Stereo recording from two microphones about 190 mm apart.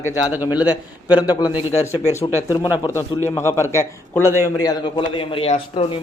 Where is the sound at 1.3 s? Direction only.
20° left (ahead or behind).